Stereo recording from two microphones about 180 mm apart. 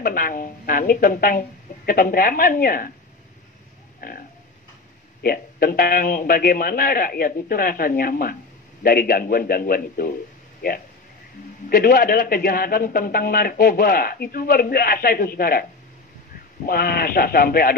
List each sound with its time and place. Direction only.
0.0 s a man's voice: 50° left (ahead or behind)
4.0 s a sound: 50° left (ahead or behind)
5.2 s a man's voice: 55° left (ahead or behind)
16.6 s a man's voice: 55° left (ahead or behind)